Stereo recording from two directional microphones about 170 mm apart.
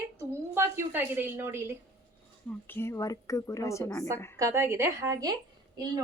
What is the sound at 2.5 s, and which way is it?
A woman's voice, 15° left (ahead or behind).